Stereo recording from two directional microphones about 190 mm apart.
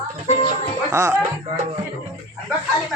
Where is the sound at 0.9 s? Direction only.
15° right (ahead or behind).